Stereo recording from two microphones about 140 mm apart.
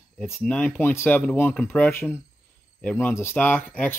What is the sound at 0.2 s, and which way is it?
Speech, 5° left (ahead or behind).